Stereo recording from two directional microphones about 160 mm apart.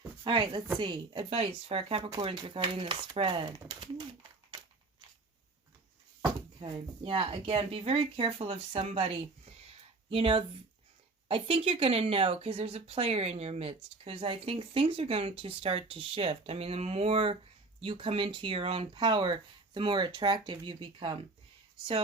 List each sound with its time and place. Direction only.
0.3 s speech: 30° right (ahead or behind)
6.6 s speech: 30° right (ahead or behind)